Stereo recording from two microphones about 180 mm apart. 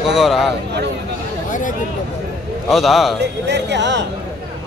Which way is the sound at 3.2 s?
70° right (ahead or behind).